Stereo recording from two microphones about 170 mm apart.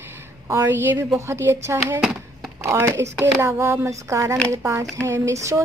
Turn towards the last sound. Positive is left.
turn(degrees=-15)  # may be behind; listen again after turning